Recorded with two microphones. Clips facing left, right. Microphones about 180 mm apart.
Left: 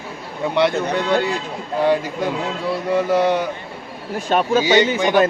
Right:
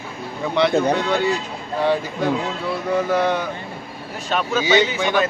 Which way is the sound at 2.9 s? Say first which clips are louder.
Left 2 dB; 10° left (ahead or behind).